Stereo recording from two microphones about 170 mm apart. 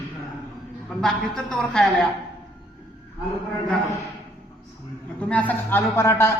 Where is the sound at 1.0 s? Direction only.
5° left (ahead or behind).